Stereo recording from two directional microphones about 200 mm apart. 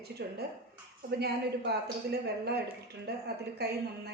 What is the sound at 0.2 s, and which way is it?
Speech, 55° right (ahead or behind).